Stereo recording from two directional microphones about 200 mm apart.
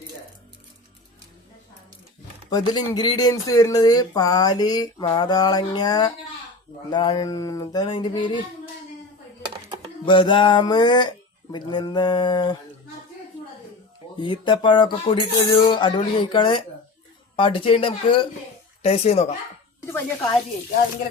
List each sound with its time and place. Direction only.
2.5 s speech: 20° left (ahead or behind)
10.1 s speech: 25° left (ahead or behind)
14.2 s speech: 25° left (ahead or behind)
19.8 s speech: 15° left (ahead or behind)